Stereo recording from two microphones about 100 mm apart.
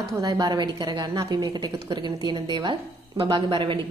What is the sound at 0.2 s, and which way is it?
A woman's voice, 45° right (ahead or behind).